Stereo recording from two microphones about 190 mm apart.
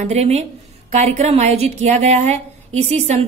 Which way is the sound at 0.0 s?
35° right (ahead or behind).